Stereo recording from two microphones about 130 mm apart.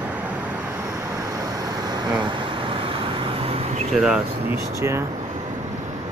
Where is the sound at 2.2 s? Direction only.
45° right (ahead or behind).